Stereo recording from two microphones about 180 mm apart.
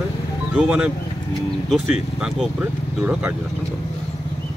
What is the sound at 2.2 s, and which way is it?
Speech, 5° right (ahead or behind).